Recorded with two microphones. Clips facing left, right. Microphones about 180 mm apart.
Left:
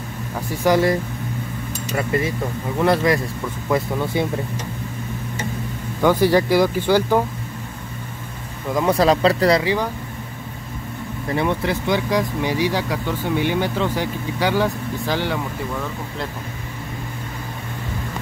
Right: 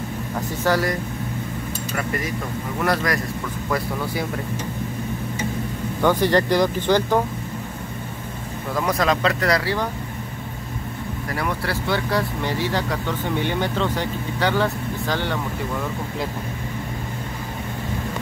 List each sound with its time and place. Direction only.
0.5 s speech: 15° left (ahead or behind)
2.0 s speech: 25° left (ahead or behind)
6.0 s speech: 10° left (ahead or behind)
8.8 s speech: 30° left (ahead or behind)
9.6 s speech: 15° left (ahead or behind)
11.2 s speech: 25° left (ahead or behind)